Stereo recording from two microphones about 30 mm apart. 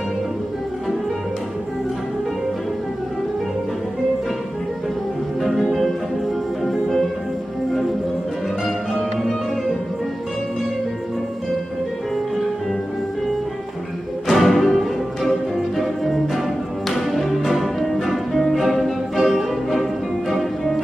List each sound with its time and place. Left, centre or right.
5.4 s music: centre
14.3 s music: centre
15.8 s music: centre
19.1 s music: centre
19.7 s music: centre